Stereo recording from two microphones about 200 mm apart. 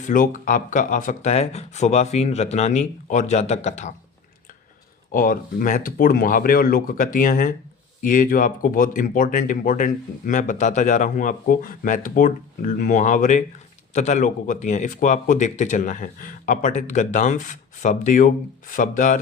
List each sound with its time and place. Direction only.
0.1 s speech: 40° left (ahead or behind)
5.1 s speech: 45° left (ahead or behind)